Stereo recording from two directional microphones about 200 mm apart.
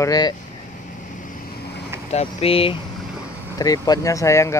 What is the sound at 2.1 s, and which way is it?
Speech, 30° left (ahead or behind).